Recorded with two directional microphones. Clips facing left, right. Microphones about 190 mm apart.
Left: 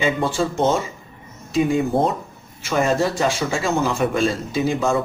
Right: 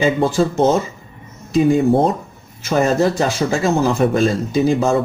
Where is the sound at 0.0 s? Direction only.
40° right (ahead or behind).